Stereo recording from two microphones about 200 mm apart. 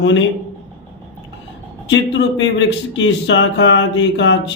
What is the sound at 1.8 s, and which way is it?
A man's voice, 70° left (ahead or behind).